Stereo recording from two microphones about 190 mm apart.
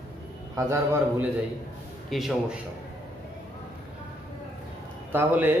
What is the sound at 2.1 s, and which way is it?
Speech, centre (ahead or behind).